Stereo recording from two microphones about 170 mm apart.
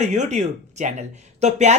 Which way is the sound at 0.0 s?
45° right (ahead or behind).